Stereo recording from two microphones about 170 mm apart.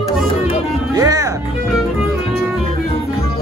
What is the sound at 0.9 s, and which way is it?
Music, 20° right (ahead or behind).